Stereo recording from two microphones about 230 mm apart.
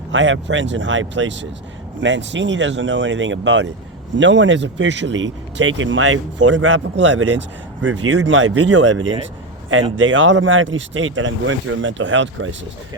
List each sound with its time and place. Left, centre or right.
0.1 s speech: right